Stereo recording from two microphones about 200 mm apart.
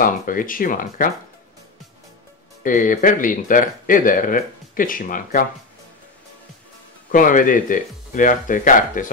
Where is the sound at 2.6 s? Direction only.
40° left (ahead or behind).